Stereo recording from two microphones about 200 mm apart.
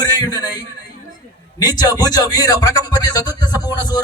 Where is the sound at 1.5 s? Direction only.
20° left (ahead or behind).